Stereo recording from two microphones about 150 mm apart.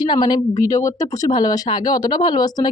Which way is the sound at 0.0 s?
30° left (ahead or behind).